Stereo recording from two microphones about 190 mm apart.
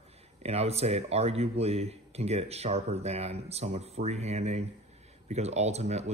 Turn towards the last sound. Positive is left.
turn(degrees=-35)  # may be behind; listen again after turning